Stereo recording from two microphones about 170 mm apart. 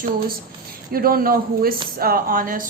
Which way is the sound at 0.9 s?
60° right (ahead or behind).